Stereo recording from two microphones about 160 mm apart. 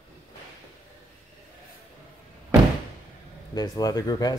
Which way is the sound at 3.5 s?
25° left (ahead or behind).